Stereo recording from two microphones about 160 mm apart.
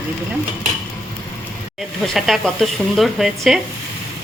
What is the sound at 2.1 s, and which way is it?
Speech, centre (ahead or behind).